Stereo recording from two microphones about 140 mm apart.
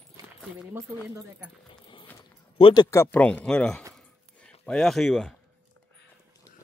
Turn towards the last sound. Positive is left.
turn(degrees=0)  # may be behind; listen again after turning